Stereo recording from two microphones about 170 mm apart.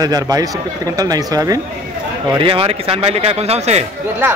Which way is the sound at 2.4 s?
30° right (ahead or behind).